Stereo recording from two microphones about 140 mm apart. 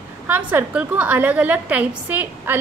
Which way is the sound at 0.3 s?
10° right (ahead or behind).